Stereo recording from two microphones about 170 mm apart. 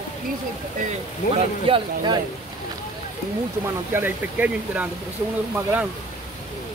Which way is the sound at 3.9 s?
10° right (ahead or behind).